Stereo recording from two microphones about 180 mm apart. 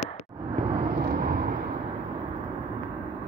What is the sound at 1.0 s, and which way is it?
Vehicle, 55° right (ahead or behind).